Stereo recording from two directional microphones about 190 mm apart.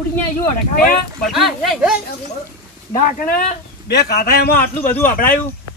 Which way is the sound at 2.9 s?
45° left (ahead or behind).